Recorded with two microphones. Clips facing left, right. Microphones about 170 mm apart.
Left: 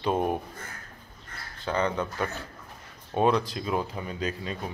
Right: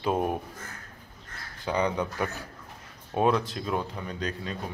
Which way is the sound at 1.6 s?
15° right (ahead or behind).